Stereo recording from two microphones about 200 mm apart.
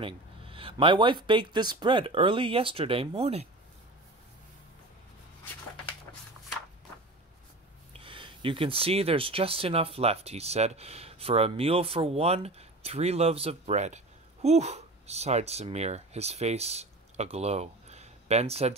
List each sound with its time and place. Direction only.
0.0 s speech: 25° right (ahead or behind)
7.9 s speech: 25° right (ahead or behind)